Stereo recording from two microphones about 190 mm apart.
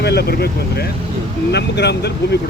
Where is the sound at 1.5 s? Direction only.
60° left (ahead or behind).